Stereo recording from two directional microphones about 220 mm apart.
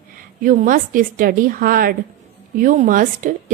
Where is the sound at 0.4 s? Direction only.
40° right (ahead or behind).